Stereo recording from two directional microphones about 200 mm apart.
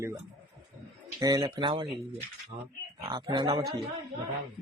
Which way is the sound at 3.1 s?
20° right (ahead or behind).